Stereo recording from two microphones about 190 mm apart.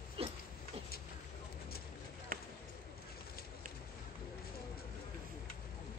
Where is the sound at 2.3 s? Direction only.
50° right (ahead or behind).